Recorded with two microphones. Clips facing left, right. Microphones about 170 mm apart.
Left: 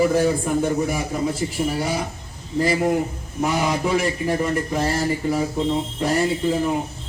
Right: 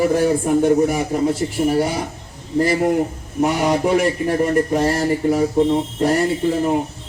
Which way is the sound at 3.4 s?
45° right (ahead or behind).